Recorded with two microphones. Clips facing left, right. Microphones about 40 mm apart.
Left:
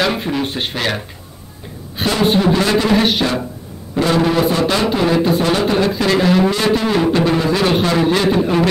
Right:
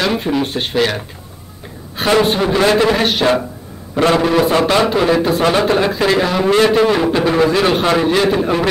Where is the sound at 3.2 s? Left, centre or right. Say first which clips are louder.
Right 5 dB; centre.